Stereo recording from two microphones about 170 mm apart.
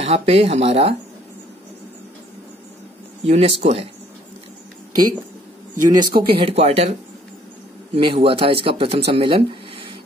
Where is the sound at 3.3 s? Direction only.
40° right (ahead or behind).